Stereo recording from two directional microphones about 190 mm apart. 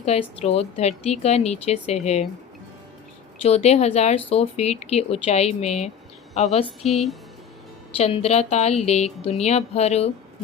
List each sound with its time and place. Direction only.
0.0 s a woman's voice: 35° left (ahead or behind)
3.4 s a woman's voice: 35° left (ahead or behind)
6.8 s speech: centre (ahead or behind)
7.9 s a woman's voice: 30° left (ahead or behind)